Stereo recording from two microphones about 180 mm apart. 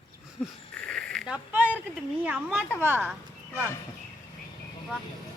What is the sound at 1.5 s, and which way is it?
A woman's voice, 10° right (ahead or behind).